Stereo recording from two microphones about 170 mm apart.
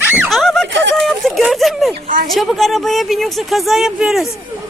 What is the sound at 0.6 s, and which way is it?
Speech, 90° right.